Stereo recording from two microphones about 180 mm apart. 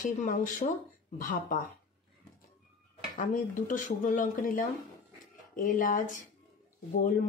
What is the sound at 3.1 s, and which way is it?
Speech, 45° left (ahead or behind).